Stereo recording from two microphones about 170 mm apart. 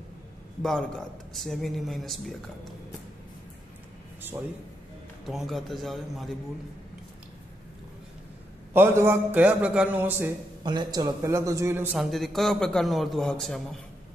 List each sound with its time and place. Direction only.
0.6 s a man's voice: centre (ahead or behind)
5.2 s a man's voice: centre (ahead or behind)
8.7 s a man's voice: 15° right (ahead or behind)
10.6 s a man's voice: 25° right (ahead or behind)
12.0 s a man's voice: centre (ahead or behind)